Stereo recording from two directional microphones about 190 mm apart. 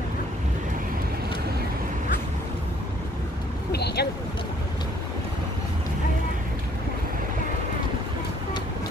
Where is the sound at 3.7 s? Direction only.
60° left (ahead or behind).